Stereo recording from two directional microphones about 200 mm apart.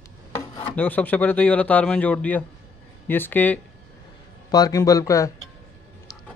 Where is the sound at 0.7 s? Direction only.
10° left (ahead or behind).